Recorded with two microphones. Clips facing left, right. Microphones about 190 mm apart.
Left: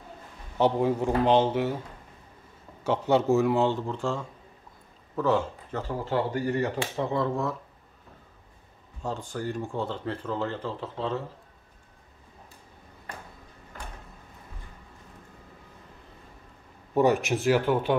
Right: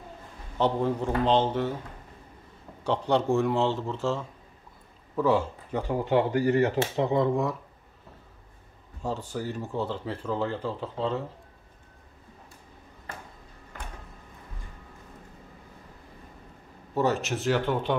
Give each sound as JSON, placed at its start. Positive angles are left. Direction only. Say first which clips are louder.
{"t": 0.6, "sound": "speech", "louder": "left 2 dB", "side_deg": 10}
{"t": 2.8, "sound": "a man's voice", "louder": "left 1 dB", "side_deg": 5}
{"t": 9.0, "sound": "speech", "louder": "even", "side_deg": -5}
{"t": 16.9, "sound": "speech", "louder": "left 4 dB", "side_deg": 15}